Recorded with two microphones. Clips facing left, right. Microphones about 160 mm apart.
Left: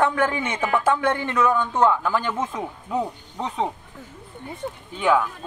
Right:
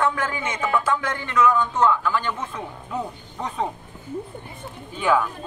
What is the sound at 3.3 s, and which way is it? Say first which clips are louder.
Speech: left 1 dB; 15° left (ahead or behind).